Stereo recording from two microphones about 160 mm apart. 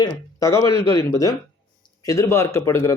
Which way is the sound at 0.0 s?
20° left (ahead or behind).